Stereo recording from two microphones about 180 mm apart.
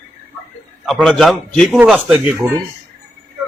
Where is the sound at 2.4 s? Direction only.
15° right (ahead or behind).